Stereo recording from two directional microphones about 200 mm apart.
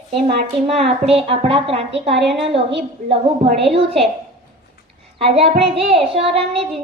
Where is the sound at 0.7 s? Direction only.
30° right (ahead or behind).